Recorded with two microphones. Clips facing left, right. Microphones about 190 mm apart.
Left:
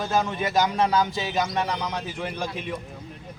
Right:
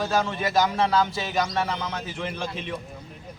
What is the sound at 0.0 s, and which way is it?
A man's voice, 15° left (ahead or behind).